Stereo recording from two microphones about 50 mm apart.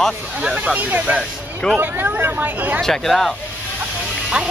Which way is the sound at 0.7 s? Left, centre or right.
Right.